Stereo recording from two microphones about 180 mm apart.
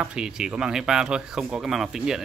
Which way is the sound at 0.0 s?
5° right (ahead or behind).